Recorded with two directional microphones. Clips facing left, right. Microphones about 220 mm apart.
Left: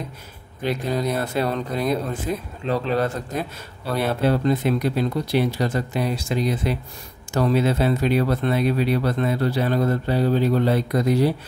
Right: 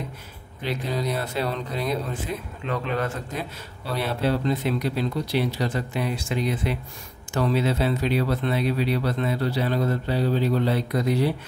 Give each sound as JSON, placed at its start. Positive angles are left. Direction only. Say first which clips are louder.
{"t": 0.7, "sound": "a man's voice", "louder": "left 4 dB", "side_deg": 50}
{"t": 3.9, "sound": "speech", "louder": "left 4 dB", "side_deg": 50}